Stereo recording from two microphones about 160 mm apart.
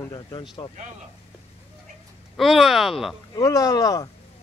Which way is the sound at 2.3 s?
Centre (ahead or behind).